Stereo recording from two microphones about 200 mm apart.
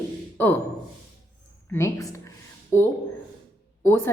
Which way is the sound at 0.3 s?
10° left (ahead or behind).